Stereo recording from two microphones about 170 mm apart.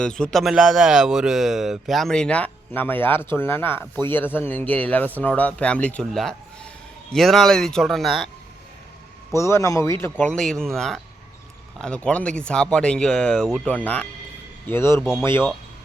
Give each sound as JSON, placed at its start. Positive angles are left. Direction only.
{"t": 0.0, "sound": "speech", "side_deg": 5}
{"t": 9.3, "sound": "speech", "side_deg": 15}